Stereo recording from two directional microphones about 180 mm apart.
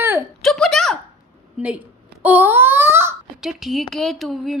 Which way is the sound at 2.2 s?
10° right (ahead or behind).